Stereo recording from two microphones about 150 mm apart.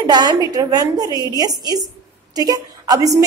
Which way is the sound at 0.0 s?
25° right (ahead or behind).